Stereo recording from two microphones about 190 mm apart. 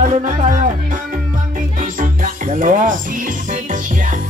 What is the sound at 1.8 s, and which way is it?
Music, 45° right (ahead or behind).